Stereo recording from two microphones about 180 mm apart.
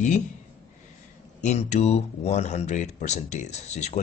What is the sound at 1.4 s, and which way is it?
Speech, 40° left (ahead or behind).